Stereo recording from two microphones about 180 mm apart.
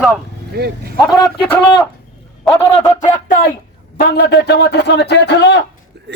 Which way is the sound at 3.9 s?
65° left (ahead or behind).